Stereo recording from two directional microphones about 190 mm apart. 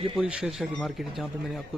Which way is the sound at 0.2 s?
5° right (ahead or behind).